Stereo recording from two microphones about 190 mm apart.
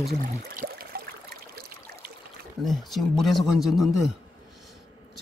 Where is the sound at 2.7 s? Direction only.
Centre (ahead or behind).